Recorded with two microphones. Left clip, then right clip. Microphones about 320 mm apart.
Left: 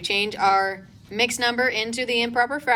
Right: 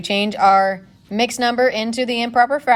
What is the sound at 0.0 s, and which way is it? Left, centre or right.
A woman's voice, centre.